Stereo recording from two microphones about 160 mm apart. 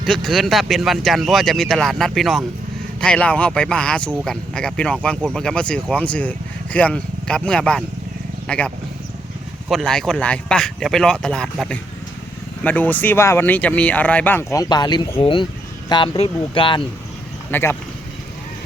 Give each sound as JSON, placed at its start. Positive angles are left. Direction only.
{"t": 0.0, "sound": "speech", "side_deg": 0}
{"t": 17.5, "sound": "speech", "side_deg": 15}